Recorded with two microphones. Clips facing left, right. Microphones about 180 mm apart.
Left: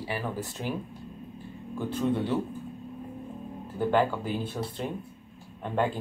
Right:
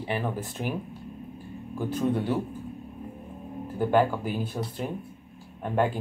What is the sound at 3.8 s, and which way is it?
Speech, 10° right (ahead or behind).